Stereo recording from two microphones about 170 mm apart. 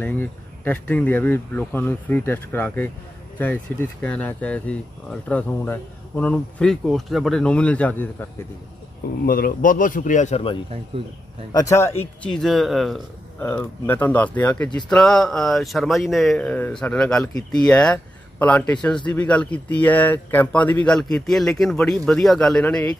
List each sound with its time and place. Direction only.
0.0 s speech: 10° left (ahead or behind)
9.2 s a man's voice: 60° left (ahead or behind); by 10.6 s 35° left (ahead or behind)
10.9 s speech: 30° right (ahead or behind)
11.5 s a man's voice: 20° left (ahead or behind)
12.2 s speech: 5° left (ahead or behind)
13.4 s speech: 10° left (ahead or behind)